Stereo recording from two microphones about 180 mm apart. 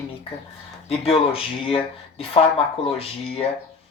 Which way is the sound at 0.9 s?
30° left (ahead or behind).